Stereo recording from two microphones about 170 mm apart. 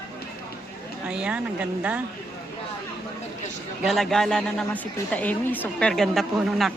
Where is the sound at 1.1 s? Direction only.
5° right (ahead or behind).